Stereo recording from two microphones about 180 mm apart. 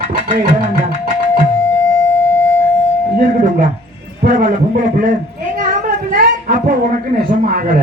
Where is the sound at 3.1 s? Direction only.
50° right (ahead or behind).